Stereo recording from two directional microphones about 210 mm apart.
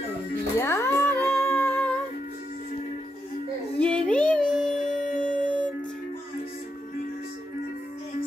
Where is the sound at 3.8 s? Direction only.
5° left (ahead or behind).